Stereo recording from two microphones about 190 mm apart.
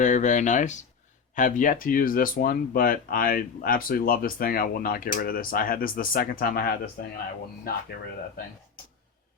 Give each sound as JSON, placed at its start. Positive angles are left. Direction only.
{"t": 0.0, "sound": "speech", "side_deg": 40}